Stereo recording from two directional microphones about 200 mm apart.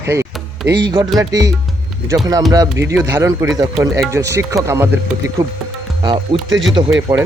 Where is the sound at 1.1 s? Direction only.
15° right (ahead or behind).